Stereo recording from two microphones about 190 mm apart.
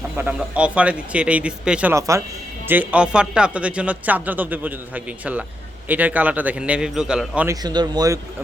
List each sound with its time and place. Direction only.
0.2 s speech: 5° right (ahead or behind)
7.5 s speech: 20° right (ahead or behind)